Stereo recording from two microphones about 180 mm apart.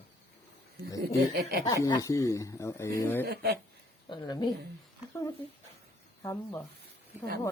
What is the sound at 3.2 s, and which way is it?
Speech, 60° right (ahead or behind).